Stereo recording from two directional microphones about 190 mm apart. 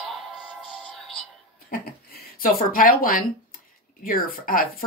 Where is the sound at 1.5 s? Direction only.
50° left (ahead or behind).